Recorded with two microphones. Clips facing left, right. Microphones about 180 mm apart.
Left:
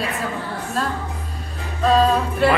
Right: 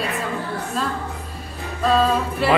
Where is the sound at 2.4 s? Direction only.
Centre (ahead or behind).